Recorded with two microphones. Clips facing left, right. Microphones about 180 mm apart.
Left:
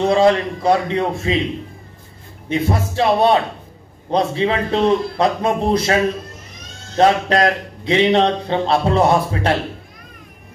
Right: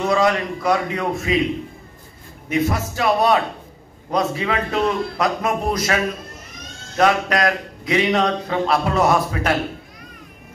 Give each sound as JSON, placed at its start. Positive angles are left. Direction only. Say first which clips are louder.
{"t": 0.0, "sound": "speech", "louder": "left 4 dB", "side_deg": 30}
{"t": 2.5, "sound": "speech", "louder": "left 1 dB", "side_deg": 30}
{"t": 7.0, "sound": "speech", "louder": "left 3 dB", "side_deg": 30}